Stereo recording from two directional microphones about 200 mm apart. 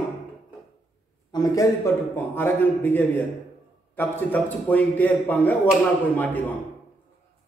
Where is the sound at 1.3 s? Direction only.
15° left (ahead or behind).